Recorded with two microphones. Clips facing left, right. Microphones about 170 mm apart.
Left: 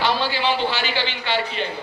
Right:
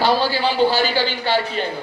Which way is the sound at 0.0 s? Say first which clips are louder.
Right 4 dB; 35° right (ahead or behind).